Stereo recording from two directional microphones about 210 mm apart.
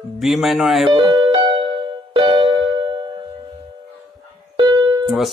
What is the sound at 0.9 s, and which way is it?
Music, 20° right (ahead or behind).